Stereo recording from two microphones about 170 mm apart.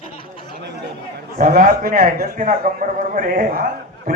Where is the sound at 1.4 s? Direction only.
60° right (ahead or behind).